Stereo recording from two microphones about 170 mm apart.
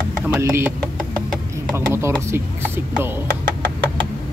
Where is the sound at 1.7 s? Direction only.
15° right (ahead or behind).